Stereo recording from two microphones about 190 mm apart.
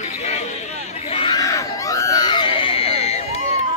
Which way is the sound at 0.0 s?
35° left (ahead or behind).